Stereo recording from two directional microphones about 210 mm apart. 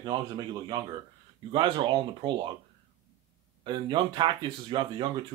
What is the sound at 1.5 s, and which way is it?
Speech, 25° right (ahead or behind).